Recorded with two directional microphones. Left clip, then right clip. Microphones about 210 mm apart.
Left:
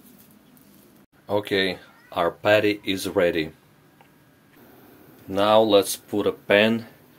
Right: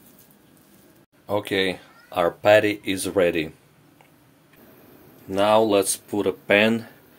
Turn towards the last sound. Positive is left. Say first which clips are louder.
# even
turn(degrees=-10)  # may be behind; listen again after turning